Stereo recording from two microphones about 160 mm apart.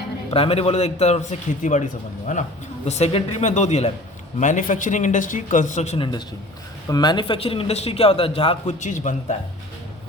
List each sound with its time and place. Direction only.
0.3 s a man's voice: 35° left (ahead or behind)
2.8 s speech: 45° left (ahead or behind)
6.0 s a man's voice: 30° left (ahead or behind); by 9.1 s 50° left (ahead or behind)